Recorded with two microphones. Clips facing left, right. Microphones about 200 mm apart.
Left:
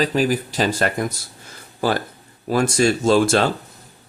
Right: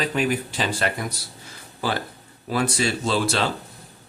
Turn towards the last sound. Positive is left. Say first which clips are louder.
# left 7 dB
turn(degrees=50)  # may be behind; listen again after turning